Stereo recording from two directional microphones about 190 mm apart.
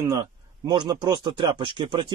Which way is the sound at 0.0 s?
20° right (ahead or behind).